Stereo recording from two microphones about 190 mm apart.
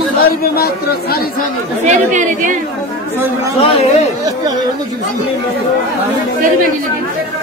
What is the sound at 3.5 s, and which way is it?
Speech, 30° left (ahead or behind).